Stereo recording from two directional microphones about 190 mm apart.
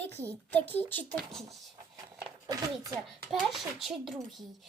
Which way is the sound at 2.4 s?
20° right (ahead or behind).